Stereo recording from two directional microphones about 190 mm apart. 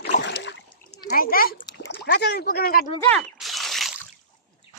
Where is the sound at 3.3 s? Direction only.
Centre (ahead or behind).